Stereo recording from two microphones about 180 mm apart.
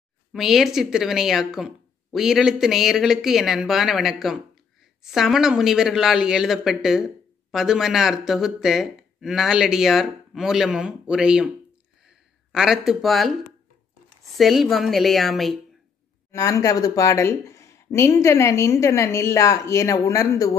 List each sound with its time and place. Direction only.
0.3 s speech: centre (ahead or behind)
14.3 s speech: centre (ahead or behind)
16.3 s speech: 15° left (ahead or behind)